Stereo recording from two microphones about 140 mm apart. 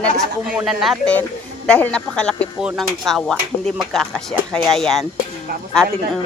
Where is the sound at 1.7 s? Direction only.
10° left (ahead or behind).